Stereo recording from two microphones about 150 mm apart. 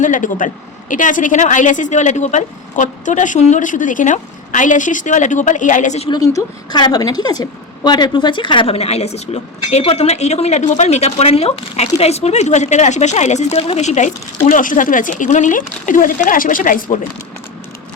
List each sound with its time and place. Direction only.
0.0 s speech: 60° left (ahead or behind)
6.1 s a woman's voice: 25° left (ahead or behind); by 14.1 s 50° left (ahead or behind)
14.5 s speech: 60° left (ahead or behind)